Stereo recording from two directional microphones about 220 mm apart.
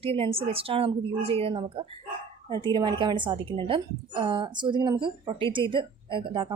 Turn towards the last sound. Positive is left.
turn(degrees=-20)  # may be behind; listen again after turning